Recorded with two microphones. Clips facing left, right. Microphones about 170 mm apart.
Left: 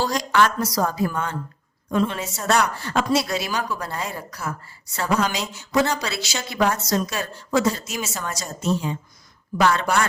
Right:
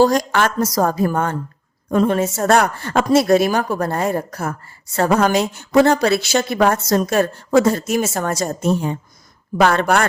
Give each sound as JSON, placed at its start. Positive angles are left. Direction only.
{"t": 0.0, "sound": "a woman's voice", "side_deg": -50}